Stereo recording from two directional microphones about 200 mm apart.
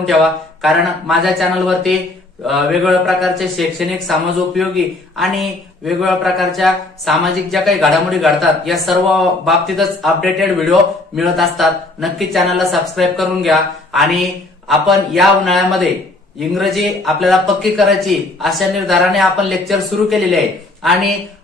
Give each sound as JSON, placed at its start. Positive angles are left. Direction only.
{"t": 0.0, "sound": "speech", "side_deg": 0}